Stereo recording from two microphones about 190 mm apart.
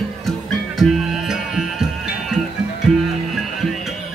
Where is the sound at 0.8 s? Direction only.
Centre (ahead or behind).